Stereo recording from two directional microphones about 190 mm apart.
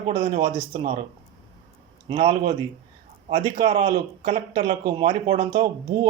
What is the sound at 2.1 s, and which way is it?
Speech, 40° right (ahead or behind).